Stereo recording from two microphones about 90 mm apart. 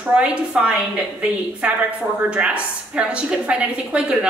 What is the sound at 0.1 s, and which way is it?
A woman's voice, 15° right (ahead or behind).